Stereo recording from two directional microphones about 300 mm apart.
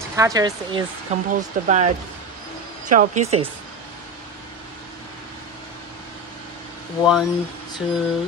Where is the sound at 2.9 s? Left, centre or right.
Right.